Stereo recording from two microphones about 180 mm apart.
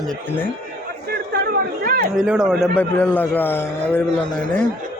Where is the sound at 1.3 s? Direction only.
55° right (ahead or behind).